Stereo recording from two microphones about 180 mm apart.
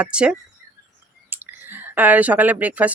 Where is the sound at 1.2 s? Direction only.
10° right (ahead or behind).